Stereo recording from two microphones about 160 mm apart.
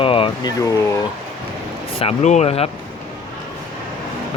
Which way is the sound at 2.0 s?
45° left (ahead or behind).